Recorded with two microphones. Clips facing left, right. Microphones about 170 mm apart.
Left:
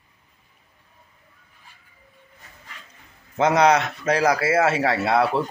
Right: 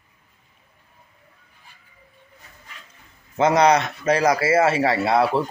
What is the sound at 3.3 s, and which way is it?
A man's voice, centre (ahead or behind).